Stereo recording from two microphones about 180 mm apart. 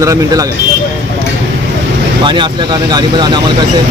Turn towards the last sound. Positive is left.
turn(degrees=-25)  # may be behind; listen again after turning